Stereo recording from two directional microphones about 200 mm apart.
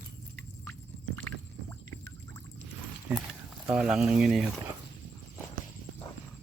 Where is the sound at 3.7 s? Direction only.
5° right (ahead or behind).